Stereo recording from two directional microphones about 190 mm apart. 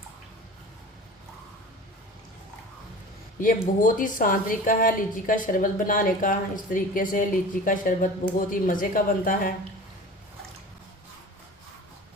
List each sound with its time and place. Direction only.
3.4 s a woman's voice: 45° left (ahead or behind)